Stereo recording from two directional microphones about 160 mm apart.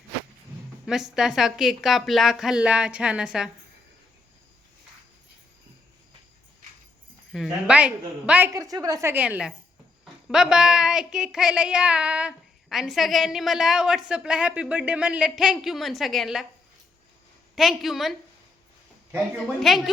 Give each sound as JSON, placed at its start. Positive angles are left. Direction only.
{"t": 0.9, "sound": "speech", "side_deg": -5}
{"t": 7.3, "sound": "a woman's voice", "side_deg": -5}
{"t": 8.5, "sound": "a woman's voice", "side_deg": -20}
{"t": 17.5, "sound": "speech", "side_deg": 0}
{"t": 19.5, "sound": "speech", "side_deg": 0}